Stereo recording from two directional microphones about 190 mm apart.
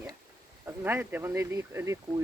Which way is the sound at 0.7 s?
10° right (ahead or behind).